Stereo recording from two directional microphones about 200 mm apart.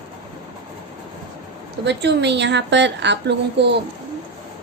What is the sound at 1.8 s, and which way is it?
A woman's voice, 60° right (ahead or behind).